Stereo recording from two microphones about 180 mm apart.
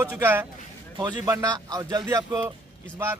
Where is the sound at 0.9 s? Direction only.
25° right (ahead or behind).